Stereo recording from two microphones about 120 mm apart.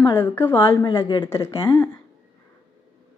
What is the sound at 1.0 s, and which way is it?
Speech, 40° left (ahead or behind).